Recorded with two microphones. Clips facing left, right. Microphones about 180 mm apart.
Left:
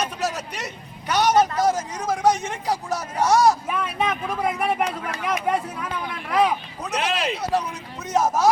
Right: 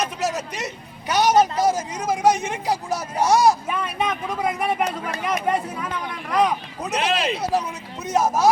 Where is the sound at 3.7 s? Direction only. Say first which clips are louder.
Even; centre (ahead or behind).